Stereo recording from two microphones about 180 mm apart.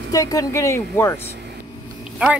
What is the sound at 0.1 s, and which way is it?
Speech, 20° left (ahead or behind).